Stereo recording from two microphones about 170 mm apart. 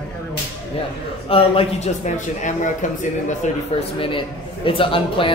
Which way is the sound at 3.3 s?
35° left (ahead or behind).